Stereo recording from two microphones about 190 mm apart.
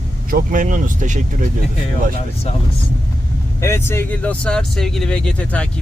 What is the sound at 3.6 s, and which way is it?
Speech, 15° left (ahead or behind).